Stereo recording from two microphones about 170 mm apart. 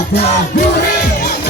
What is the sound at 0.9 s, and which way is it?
Music, 65° left (ahead or behind).